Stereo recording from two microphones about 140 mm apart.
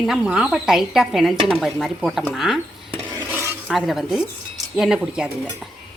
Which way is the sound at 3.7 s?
Centre (ahead or behind).